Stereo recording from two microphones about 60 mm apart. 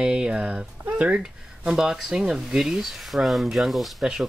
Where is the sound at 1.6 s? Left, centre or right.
Centre.